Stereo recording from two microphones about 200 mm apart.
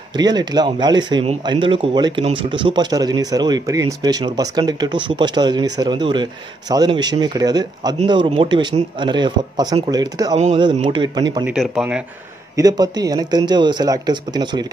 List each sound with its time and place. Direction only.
0.1 s speech: 20° right (ahead or behind)
11.4 s speech: 5° right (ahead or behind)
12.5 s speech: 20° right (ahead or behind)